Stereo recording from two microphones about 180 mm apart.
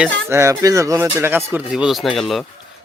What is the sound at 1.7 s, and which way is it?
Speech, centre (ahead or behind).